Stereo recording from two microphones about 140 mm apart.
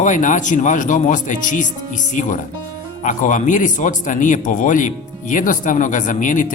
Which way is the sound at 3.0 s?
65° left (ahead or behind).